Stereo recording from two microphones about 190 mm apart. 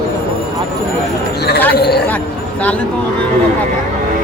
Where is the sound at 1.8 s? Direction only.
60° left (ahead or behind).